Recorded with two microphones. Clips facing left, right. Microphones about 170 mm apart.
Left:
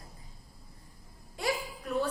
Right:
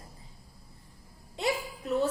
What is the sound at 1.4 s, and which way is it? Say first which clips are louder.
Speech: right 2 dB; 25° right (ahead or behind).